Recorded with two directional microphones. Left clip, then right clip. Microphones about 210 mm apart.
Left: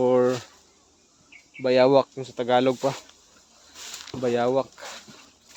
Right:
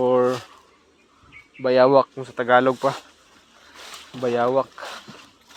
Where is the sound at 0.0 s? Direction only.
20° left (ahead or behind).